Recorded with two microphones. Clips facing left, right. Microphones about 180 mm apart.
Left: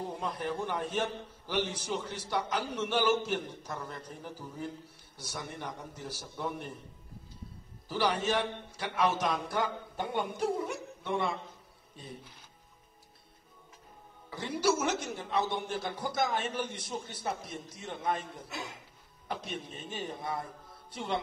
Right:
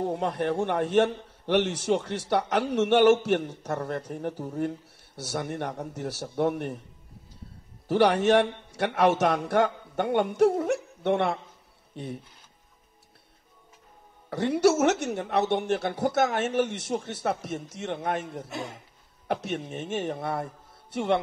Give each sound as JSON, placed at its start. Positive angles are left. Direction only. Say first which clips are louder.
{"t": 0.0, "sound": "speech", "louder": "right 8 dB", "side_deg": -75}
{"t": 7.9, "sound": "speech", "louder": "right 10 dB", "side_deg": -75}
{"t": 14.3, "sound": "a man's voice", "louder": "right 8 dB", "side_deg": -70}